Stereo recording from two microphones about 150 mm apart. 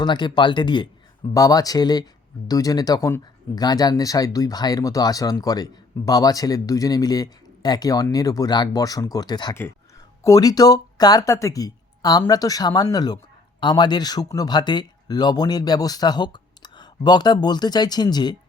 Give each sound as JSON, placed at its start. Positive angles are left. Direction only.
{"t": 0.0, "sound": "speech", "side_deg": 30}